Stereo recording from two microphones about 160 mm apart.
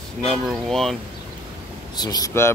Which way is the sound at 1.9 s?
25° left (ahead or behind).